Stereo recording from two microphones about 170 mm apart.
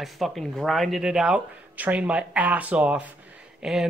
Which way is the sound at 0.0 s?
Centre (ahead or behind).